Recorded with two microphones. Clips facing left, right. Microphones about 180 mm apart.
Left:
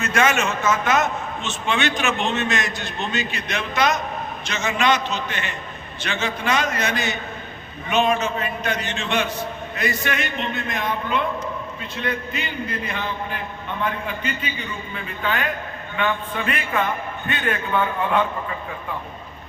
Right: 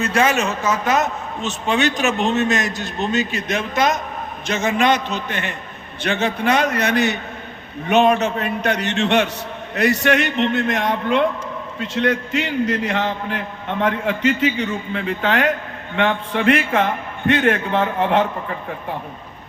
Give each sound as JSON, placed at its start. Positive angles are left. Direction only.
{"t": 0.0, "sound": "a man's voice", "side_deg": -35}